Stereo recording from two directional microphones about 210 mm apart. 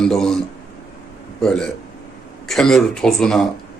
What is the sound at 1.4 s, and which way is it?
Speech, 5° left (ahead or behind).